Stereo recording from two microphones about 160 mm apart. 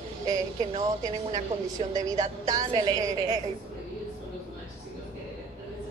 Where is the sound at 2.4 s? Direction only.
25° right (ahead or behind).